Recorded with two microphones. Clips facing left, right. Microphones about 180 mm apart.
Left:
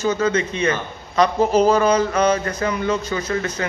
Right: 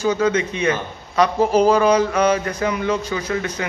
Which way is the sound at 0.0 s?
10° right (ahead or behind).